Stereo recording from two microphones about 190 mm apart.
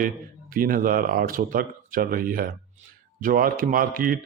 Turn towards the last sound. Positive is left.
turn(degrees=-50)  # may be behind; listen again after turning